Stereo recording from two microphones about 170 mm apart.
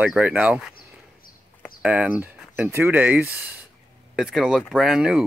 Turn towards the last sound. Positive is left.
turn(degrees=-5)  # may be behind; listen again after turning